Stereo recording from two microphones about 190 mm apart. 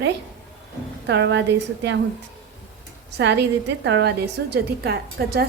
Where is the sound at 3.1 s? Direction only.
65° right (ahead or behind).